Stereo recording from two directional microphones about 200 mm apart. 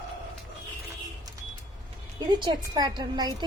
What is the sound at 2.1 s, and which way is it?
A woman's voice, 20° right (ahead or behind).